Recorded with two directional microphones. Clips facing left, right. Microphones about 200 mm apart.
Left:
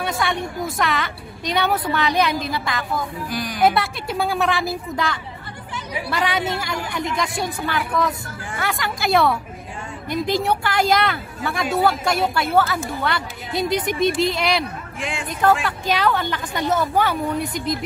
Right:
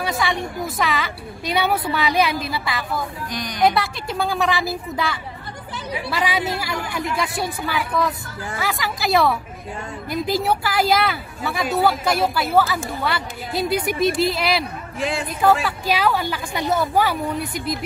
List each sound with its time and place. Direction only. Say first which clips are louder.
0.0 s speech: even; centre (ahead or behind)
3.3 s speech: left 1 dB; 5° left (ahead or behind)
15.0 s speech: right 5 dB; 40° right (ahead or behind)
15.6 s a woman's voice: even; 5° right (ahead or behind)